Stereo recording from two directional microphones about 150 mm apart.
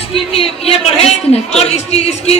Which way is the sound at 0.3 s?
40° left (ahead or behind).